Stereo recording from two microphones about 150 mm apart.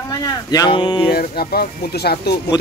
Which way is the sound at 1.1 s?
90° left.